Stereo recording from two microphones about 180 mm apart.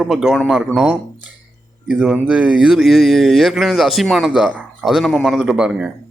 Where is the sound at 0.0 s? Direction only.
5° right (ahead or behind).